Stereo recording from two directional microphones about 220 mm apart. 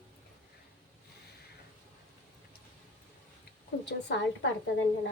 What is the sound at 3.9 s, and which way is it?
Speech, 50° left (ahead or behind).